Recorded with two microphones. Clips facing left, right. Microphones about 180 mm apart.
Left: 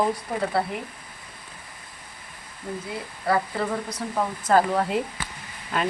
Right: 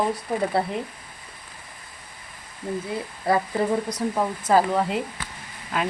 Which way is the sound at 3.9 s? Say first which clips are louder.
Right 3 dB; 10° right (ahead or behind).